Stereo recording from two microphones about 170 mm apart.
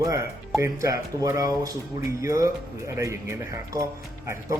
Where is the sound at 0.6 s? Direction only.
20° right (ahead or behind).